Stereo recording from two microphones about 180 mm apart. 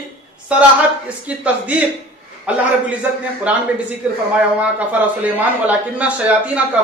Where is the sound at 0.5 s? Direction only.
5° right (ahead or behind).